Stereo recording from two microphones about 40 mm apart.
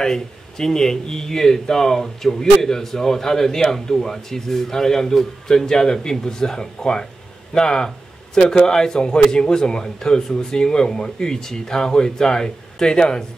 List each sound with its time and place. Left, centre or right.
0.0 s a man's voice: centre